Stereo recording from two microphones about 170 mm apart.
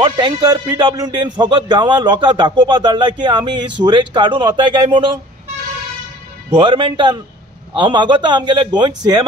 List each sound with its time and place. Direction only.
0.0 s speech: 25° right (ahead or behind)
6.5 s speech: 30° right (ahead or behind)